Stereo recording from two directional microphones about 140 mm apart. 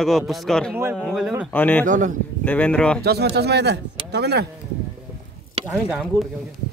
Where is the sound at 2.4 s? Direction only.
10° left (ahead or behind).